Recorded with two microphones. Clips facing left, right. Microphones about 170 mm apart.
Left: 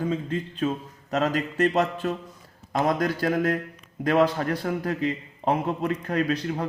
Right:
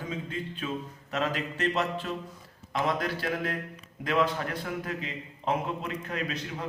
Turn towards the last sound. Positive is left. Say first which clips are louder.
# left 9 dB
turn(degrees=45)  # may be behind; listen again after turning